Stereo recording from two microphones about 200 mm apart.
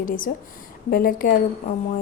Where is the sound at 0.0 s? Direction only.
45° left (ahead or behind).